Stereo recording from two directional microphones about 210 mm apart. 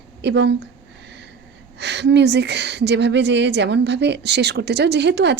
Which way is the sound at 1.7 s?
55° right (ahead or behind).